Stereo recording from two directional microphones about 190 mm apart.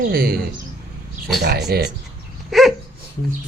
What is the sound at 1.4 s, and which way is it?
Speech, 60° right (ahead or behind).